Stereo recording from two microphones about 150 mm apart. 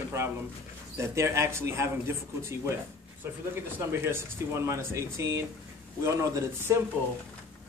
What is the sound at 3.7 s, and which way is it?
Speech, 15° right (ahead or behind).